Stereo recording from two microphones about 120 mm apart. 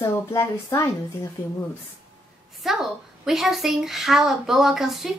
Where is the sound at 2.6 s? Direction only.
5° right (ahead or behind).